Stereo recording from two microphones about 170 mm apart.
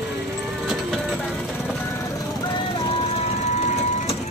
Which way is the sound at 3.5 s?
45° left (ahead or behind).